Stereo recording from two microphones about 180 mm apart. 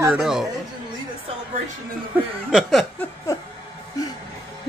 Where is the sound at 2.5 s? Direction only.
Centre (ahead or behind).